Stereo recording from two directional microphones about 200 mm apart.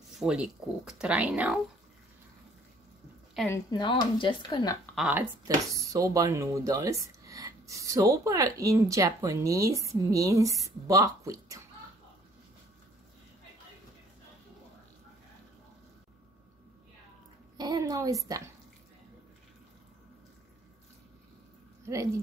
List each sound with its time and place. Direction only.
0.1 s speech: 5° right (ahead or behind)
3.4 s speech: 15° left (ahead or behind)
4.9 s speech: 5° right (ahead or behind)
5.8 s speech: 15° right (ahead or behind)
17.6 s a sound: 20° right (ahead or behind)
21.8 s speech: 15° right (ahead or behind)